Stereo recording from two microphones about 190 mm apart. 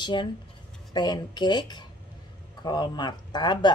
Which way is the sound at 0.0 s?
25° left (ahead or behind).